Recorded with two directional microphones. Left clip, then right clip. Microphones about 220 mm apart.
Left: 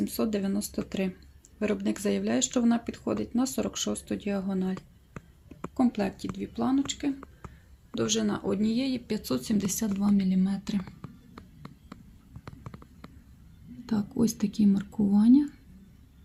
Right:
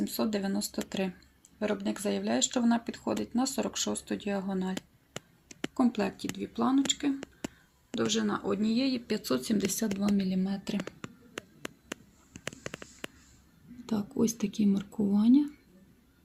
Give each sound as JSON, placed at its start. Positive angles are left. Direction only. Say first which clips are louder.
{"t": 0.0, "sound": "speech", "louder": "left 2 dB", "side_deg": 0}
{"t": 5.7, "sound": "speech", "louder": "left 2 dB", "side_deg": 0}
{"t": 13.8, "sound": "speech", "louder": "left 1 dB", "side_deg": 0}